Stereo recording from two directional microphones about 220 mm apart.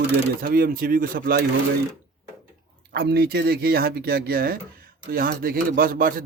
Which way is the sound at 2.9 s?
45° right (ahead or behind).